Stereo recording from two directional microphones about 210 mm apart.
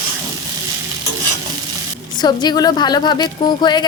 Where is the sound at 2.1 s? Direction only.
20° left (ahead or behind).